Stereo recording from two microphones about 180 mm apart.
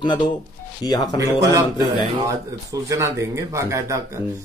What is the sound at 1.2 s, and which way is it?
Speech, 20° right (ahead or behind).